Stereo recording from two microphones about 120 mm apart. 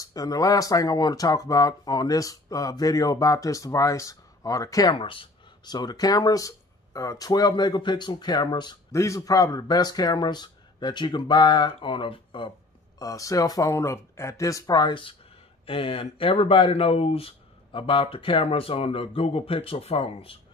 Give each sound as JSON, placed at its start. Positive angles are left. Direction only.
{"t": 0.0, "sound": "speech", "side_deg": 30}
{"t": 4.9, "sound": "speech", "side_deg": 45}
{"t": 8.9, "sound": "speech", "side_deg": 25}
{"t": 13.0, "sound": "speech", "side_deg": 30}